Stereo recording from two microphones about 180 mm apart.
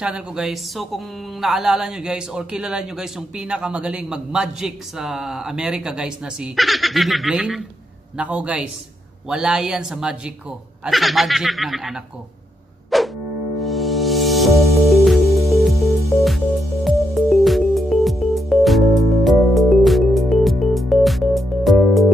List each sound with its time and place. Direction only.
0.0 s a man's voice: 5° right (ahead or behind)
12.9 s music: centre (ahead or behind)
15.2 s music: 15° right (ahead or behind)
16.2 s music: centre (ahead or behind)